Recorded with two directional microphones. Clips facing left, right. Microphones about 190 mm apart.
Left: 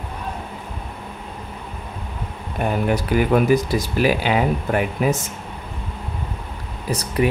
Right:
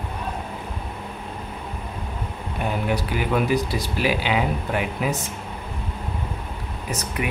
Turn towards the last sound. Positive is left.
turn(degrees=35)  # may be behind; listen again after turning